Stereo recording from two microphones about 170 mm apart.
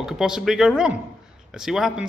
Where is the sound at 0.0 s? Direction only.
5° right (ahead or behind).